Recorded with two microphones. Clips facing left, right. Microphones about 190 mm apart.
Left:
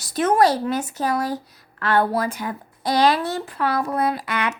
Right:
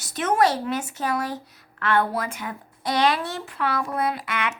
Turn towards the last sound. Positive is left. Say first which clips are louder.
# left 3 dB
turn(degrees=35)  # may be behind; listen again after turning